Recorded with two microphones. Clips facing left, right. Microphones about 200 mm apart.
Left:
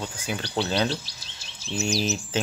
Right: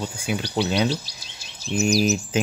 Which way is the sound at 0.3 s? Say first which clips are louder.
Right 3 dB; 10° right (ahead or behind).